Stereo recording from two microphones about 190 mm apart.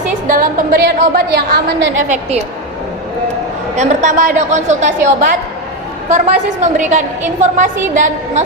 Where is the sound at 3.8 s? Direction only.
40° right (ahead or behind).